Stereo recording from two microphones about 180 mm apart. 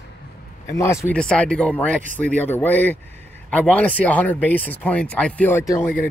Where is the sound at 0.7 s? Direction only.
15° left (ahead or behind).